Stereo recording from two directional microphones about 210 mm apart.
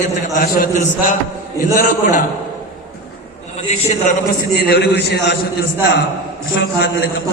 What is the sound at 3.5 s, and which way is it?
Speech, 35° left (ahead or behind).